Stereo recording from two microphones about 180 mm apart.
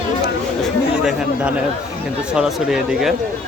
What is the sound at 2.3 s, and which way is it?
Speech, 5° right (ahead or behind).